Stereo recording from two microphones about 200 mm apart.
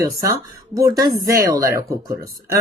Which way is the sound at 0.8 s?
20° right (ahead or behind).